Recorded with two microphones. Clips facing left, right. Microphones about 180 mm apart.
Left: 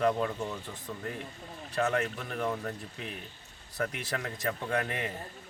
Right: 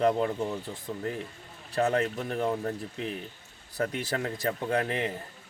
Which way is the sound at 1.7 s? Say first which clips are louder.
Right 3 dB; 30° right (ahead or behind).